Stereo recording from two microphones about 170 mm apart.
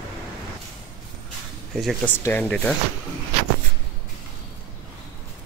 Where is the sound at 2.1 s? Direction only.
10° left (ahead or behind).